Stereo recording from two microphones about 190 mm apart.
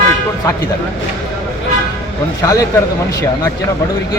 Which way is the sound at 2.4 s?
20° left (ahead or behind).